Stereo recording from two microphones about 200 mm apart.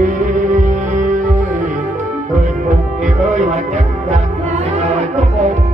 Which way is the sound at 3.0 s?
35° right (ahead or behind).